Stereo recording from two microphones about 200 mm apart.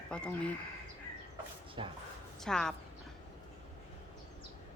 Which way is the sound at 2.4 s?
5° left (ahead or behind).